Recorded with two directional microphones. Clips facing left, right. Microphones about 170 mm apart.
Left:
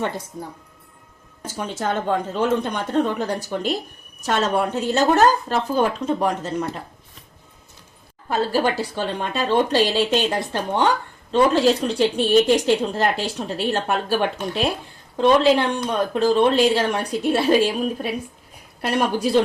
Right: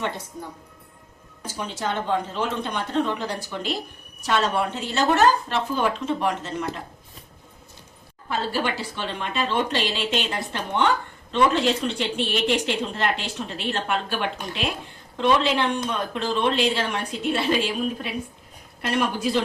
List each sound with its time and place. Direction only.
1.5 s a woman's voice: 45° left (ahead or behind)
8.3 s a woman's voice: 40° left (ahead or behind)